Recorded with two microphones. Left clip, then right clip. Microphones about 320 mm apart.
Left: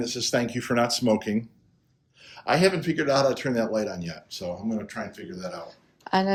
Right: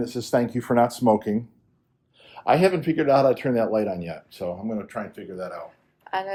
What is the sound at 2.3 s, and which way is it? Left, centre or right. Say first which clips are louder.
Speech: right 3 dB; centre.